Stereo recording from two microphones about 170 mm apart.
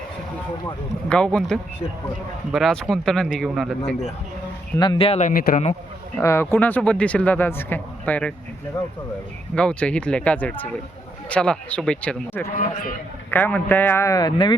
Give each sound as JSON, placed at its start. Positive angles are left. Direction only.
{"t": 1.1, "sound": "speech", "side_deg": 5}
{"t": 4.8, "sound": "speech", "side_deg": 30}
{"t": 5.3, "sound": "speech", "side_deg": 60}
{"t": 6.1, "sound": "speech", "side_deg": 15}
{"t": 9.6, "sound": "speech", "side_deg": 5}
{"t": 12.5, "sound": "a man's voice", "side_deg": 55}
{"t": 13.3, "sound": "speech", "side_deg": 10}